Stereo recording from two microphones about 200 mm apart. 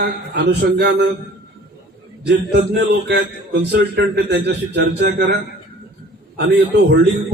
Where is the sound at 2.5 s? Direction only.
60° right (ahead or behind).